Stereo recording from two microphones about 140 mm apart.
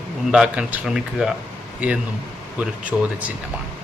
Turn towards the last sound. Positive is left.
turn(degrees=-10)  # may be behind; listen again after turning